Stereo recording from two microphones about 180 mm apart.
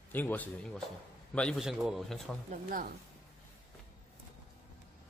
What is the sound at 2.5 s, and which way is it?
Speech, 50° right (ahead or behind).